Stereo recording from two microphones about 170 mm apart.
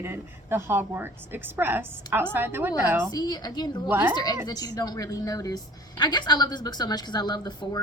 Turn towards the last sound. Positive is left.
turn(degrees=25)  # may be behind; listen again after turning